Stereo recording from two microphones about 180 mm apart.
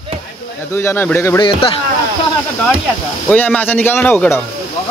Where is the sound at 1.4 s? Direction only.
30° left (ahead or behind).